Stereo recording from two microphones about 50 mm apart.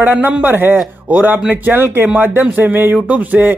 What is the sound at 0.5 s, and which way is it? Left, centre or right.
A man's voice, right.